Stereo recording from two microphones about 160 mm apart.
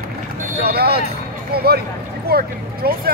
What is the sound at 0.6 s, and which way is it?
Vehicle, 80° right.